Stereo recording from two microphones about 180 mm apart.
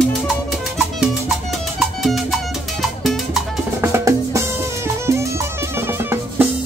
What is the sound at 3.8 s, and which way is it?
Music, 15° right (ahead or behind).